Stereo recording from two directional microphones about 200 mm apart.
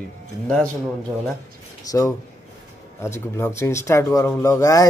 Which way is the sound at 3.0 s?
15° left (ahead or behind).